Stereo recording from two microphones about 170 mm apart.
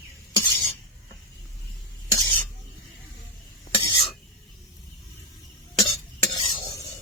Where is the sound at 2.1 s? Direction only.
20° left (ahead or behind).